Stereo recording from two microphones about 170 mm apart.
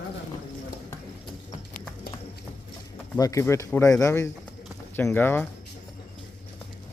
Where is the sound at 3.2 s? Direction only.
20° left (ahead or behind).